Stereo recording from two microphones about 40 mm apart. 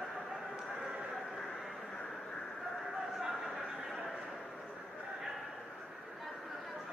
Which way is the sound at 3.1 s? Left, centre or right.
Centre.